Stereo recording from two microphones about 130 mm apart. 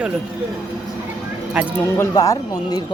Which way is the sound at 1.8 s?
25° left (ahead or behind).